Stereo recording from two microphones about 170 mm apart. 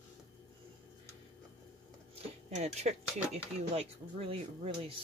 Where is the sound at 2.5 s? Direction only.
40° right (ahead or behind).